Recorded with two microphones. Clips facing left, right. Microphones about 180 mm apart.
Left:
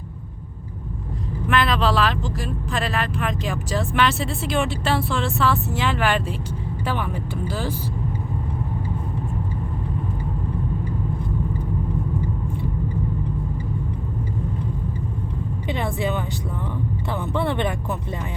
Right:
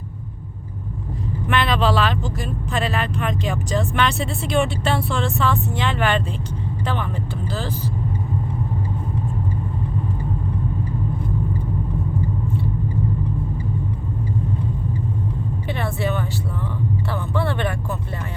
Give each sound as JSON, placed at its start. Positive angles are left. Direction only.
{"t": 1.5, "sound": "speech", "side_deg": 0}
{"t": 15.6, "sound": "speech", "side_deg": 15}